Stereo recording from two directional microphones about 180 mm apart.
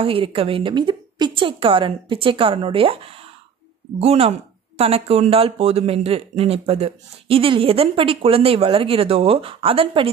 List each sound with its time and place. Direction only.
0.0 s a woman's voice: 30° right (ahead or behind)